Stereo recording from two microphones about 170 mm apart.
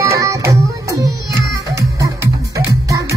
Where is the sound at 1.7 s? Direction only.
20° right (ahead or behind).